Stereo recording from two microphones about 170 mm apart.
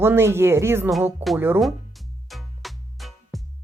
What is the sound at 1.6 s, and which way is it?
Music, centre (ahead or behind).